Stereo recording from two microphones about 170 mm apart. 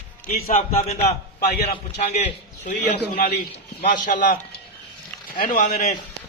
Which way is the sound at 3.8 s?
50° left (ahead or behind).